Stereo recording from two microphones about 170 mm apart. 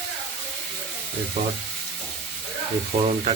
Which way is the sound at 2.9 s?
35° right (ahead or behind).